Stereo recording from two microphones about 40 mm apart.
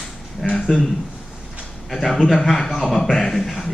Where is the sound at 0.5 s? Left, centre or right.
Centre.